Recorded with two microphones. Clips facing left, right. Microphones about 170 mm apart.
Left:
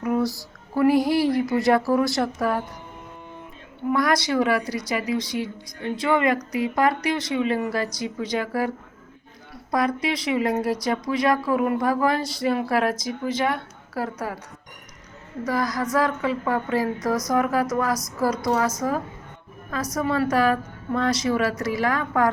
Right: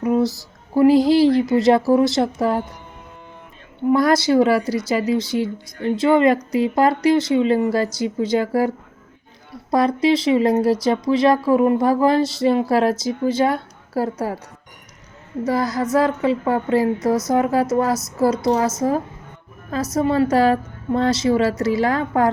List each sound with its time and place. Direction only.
0.0 s a sound: 25° right (ahead or behind)
0.7 s speech: 25° right (ahead or behind)
3.8 s speech: 30° right (ahead or behind)
9.7 s speech: 30° right (ahead or behind)
15.4 s speech: 25° right (ahead or behind)